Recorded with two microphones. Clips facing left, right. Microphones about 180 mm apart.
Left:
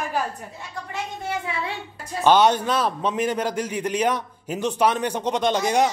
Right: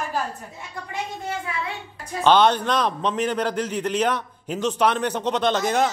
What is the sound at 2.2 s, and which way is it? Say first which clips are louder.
A man's voice: even; 10° left (ahead or behind).